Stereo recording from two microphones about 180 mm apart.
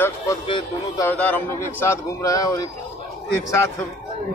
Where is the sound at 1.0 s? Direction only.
10° left (ahead or behind).